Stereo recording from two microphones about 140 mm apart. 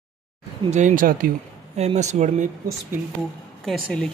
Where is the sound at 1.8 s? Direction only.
50° right (ahead or behind).